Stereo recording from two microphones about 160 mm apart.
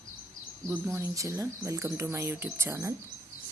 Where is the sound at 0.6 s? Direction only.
15° right (ahead or behind).